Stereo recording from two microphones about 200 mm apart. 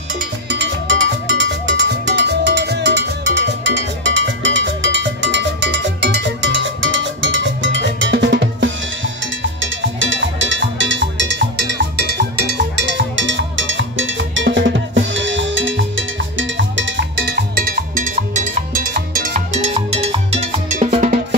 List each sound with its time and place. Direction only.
0.5 s cowbell: 65° right (ahead or behind); by 21.4 s 40° right (ahead or behind)